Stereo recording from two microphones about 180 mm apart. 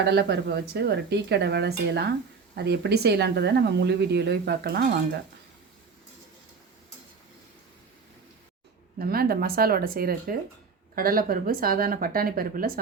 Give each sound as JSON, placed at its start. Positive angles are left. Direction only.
{"t": 0.1, "sound": "speech", "side_deg": -65}
{"t": 9.0, "sound": "speech", "side_deg": -55}